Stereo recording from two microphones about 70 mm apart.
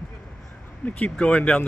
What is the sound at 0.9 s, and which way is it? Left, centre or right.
Speech, centre.